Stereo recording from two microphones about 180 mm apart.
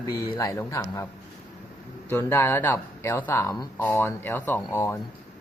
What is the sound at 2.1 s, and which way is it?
Speech, 10° left (ahead or behind).